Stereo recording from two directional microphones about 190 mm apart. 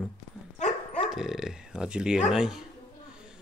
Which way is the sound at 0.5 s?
35° left (ahead or behind).